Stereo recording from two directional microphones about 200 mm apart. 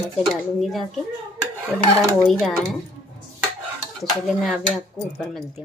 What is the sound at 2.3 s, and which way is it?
Speech, centre (ahead or behind).